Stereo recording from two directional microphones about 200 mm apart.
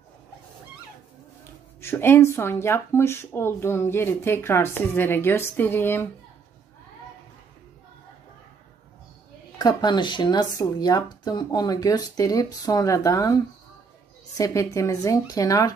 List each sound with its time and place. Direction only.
1.8 s speech: 10° left (ahead or behind)
9.6 s speech: 20° left (ahead or behind)